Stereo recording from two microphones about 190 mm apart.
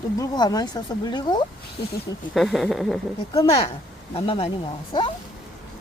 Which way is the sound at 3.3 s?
30° left (ahead or behind).